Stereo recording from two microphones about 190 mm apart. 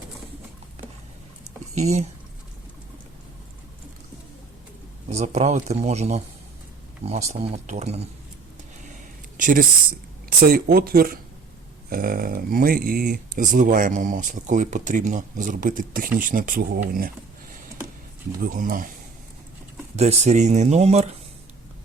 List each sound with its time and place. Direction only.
1.7 s speech: 35° right (ahead or behind)
5.0 s speech: 35° right (ahead or behind)
9.4 s speech: 45° right (ahead or behind)
18.3 s speech: 45° right (ahead or behind)
20.0 s speech: 35° right (ahead or behind)